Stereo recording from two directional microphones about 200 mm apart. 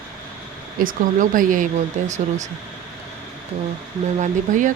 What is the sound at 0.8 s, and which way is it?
Speech, 45° right (ahead or behind).